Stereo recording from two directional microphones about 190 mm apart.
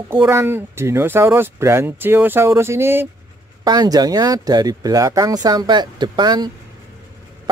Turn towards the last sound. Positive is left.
turn(degrees=-20)  # may be behind; listen again after turning